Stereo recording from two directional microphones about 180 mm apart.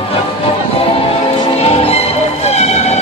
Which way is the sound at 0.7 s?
30° left (ahead or behind).